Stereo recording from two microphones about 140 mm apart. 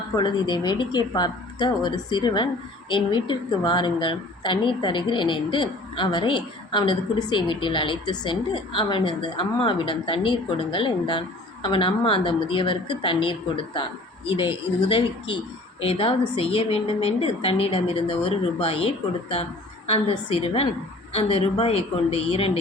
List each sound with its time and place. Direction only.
0.2 s a woman's voice: 30° left (ahead or behind)